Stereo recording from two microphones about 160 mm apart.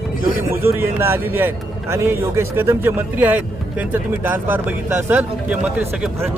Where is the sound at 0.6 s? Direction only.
15° right (ahead or behind).